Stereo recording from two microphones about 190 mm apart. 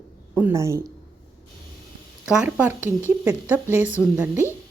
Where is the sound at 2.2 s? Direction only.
5° right (ahead or behind).